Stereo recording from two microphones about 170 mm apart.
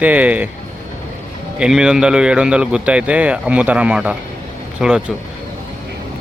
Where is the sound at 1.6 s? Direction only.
5° right (ahead or behind).